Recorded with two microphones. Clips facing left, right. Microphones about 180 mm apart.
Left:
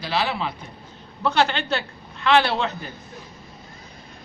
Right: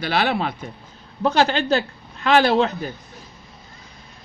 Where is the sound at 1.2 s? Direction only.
40° right (ahead or behind).